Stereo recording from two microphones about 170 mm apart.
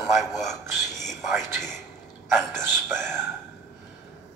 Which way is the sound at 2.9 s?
5° left (ahead or behind).